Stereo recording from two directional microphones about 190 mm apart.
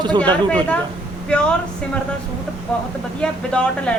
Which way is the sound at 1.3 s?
5° left (ahead or behind).